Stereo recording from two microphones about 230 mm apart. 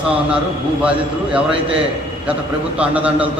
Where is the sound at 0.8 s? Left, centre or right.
Centre.